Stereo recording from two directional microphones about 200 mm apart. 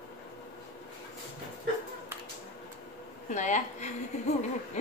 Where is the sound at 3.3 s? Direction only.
35° left (ahead or behind).